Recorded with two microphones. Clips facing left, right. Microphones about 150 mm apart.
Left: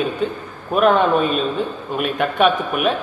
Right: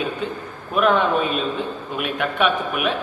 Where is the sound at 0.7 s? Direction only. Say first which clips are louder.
Left 3 dB; 40° left (ahead or behind).